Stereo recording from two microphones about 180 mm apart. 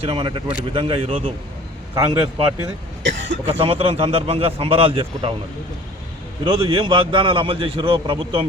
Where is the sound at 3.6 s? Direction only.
30° right (ahead or behind).